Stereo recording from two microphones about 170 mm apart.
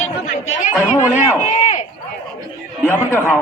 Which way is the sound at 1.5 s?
45° left (ahead or behind).